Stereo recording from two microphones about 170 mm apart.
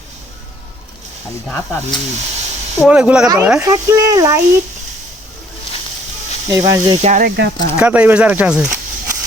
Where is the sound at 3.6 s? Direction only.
20° right (ahead or behind).